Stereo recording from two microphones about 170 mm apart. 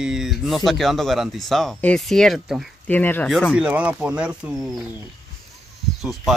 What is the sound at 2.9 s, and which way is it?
Speech, 10° left (ahead or behind).